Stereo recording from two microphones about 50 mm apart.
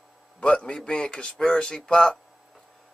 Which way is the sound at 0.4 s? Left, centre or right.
Centre.